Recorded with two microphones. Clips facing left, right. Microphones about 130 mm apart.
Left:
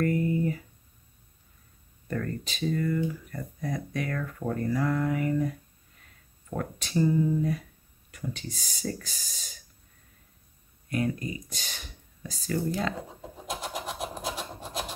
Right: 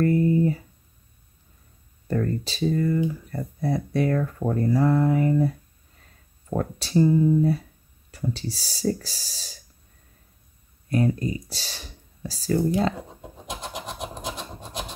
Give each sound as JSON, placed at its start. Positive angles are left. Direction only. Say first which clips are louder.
{"t": 0.0, "sound": "a sound", "louder": "right 6 dB", "side_deg": -30}
{"t": 2.0, "sound": "speech", "louder": "right 7 dB", "side_deg": -30}
{"t": 6.5, "sound": "speech", "louder": "right 6 dB", "side_deg": -30}
{"t": 10.9, "sound": "speech", "louder": "right 6 dB", "side_deg": -35}
{"t": 13.5, "sound": "rub", "louder": "even", "side_deg": 5}